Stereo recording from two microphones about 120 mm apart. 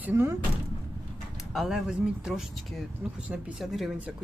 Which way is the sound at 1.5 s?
Centre (ahead or behind).